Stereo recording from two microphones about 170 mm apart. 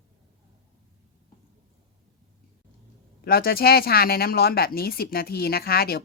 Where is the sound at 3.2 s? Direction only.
65° left (ahead or behind).